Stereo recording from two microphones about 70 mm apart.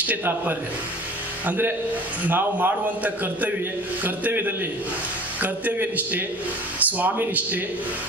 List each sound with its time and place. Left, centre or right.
0.0 s a man's voice: right